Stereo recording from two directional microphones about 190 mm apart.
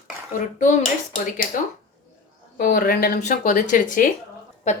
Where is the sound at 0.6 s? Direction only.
40° left (ahead or behind).